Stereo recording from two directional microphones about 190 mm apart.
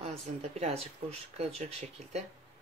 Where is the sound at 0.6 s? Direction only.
30° right (ahead or behind).